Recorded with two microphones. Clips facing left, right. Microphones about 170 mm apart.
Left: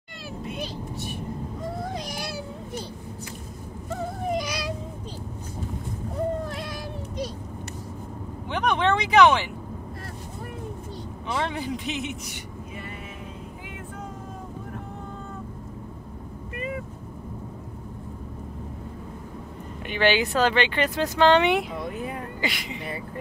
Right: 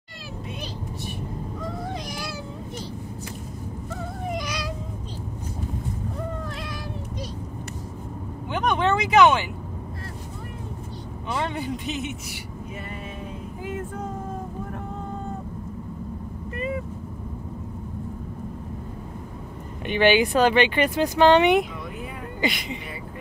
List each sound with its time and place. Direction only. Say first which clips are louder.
8.5 s vehicle: even; centre (ahead or behind)
11.3 s a man's voice: even; centre (ahead or behind)
13.7 s vehicle: right 11 dB; 45° right (ahead or behind)
19.9 s a woman's voice: right 4 dB; 15° right (ahead or behind)